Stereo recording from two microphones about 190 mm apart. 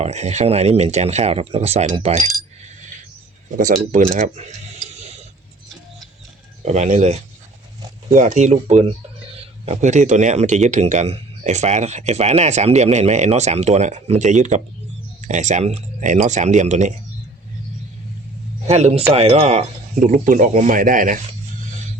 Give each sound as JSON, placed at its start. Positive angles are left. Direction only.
{"t": 0.0, "sound": "speech", "side_deg": -35}
{"t": 3.6, "sound": "speech", "side_deg": -45}
{"t": 6.7, "sound": "speech", "side_deg": -40}
{"t": 18.7, "sound": "speech", "side_deg": -35}